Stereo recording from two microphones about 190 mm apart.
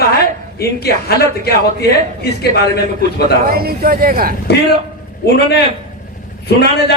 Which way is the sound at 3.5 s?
55° right (ahead or behind).